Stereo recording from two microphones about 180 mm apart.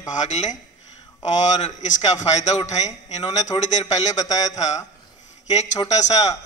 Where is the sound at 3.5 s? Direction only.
25° left (ahead or behind).